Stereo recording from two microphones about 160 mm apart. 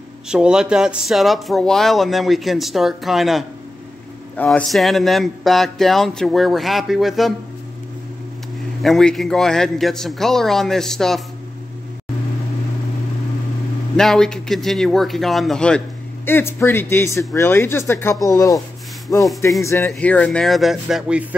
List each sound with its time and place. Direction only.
0.3 s speech: 5° right (ahead or behind)
8.8 s speech: centre (ahead or behind)
13.9 s speech: 5° left (ahead or behind)